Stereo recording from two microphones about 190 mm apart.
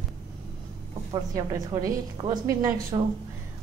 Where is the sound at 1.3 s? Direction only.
20° right (ahead or behind).